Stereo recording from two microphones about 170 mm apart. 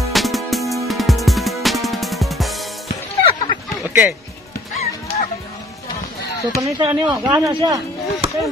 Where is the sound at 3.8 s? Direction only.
5° right (ahead or behind).